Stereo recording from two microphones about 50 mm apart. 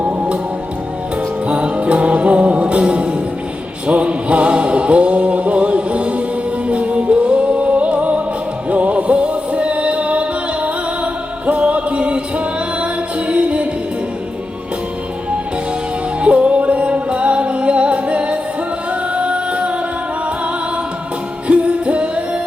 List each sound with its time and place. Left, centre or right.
0.0 s music: right
1.5 s music: right
16.2 s music: right
18.9 s singing: right
21.4 s music: right